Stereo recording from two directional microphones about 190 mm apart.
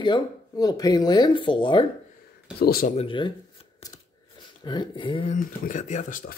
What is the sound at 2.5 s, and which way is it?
Speech, 50° left (ahead or behind).